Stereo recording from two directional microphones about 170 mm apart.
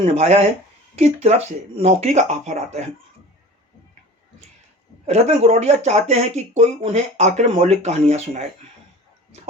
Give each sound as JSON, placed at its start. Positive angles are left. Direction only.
{"t": 0.0, "sound": "speech", "side_deg": -35}
{"t": 5.0, "sound": "speech", "side_deg": -40}